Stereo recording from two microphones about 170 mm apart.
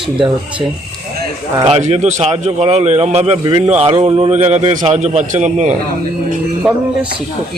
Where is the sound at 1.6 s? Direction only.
35° right (ahead or behind).